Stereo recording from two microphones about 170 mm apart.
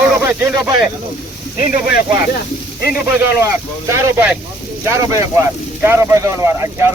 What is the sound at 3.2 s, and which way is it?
Speech, 15° right (ahead or behind).